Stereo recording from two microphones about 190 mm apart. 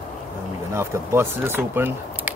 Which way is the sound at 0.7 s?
15° right (ahead or behind).